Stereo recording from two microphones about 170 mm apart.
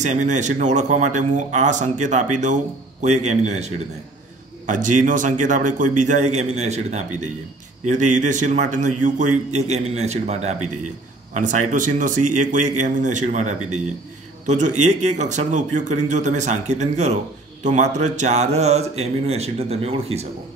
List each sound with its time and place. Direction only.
0.0 s speech: 45° right (ahead or behind)